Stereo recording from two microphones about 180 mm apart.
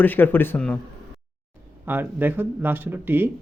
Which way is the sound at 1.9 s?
10° right (ahead or behind).